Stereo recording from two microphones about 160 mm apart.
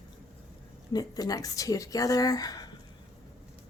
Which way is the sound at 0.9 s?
25° left (ahead or behind).